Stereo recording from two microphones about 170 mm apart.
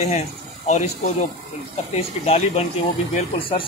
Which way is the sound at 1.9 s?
35° left (ahead or behind).